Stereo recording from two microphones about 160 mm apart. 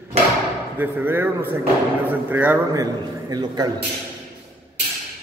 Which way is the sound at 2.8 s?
25° right (ahead or behind).